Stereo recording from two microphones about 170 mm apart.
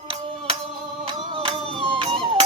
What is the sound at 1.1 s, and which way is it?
Music, 30° right (ahead or behind).